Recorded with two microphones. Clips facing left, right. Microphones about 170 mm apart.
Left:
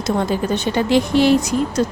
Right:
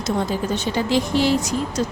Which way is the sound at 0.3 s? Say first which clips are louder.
Left 3 dB; 60° left (ahead or behind).